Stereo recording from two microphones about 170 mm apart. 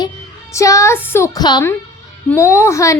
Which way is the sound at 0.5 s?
20° left (ahead or behind).